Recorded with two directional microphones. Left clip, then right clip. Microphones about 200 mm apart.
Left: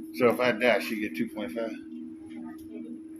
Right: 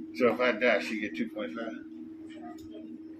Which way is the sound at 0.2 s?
35° left (ahead or behind).